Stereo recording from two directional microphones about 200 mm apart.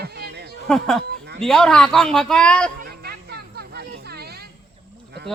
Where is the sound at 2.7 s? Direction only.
50° right (ahead or behind).